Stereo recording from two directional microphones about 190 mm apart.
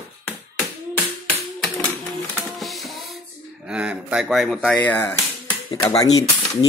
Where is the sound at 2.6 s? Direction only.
Centre (ahead or behind).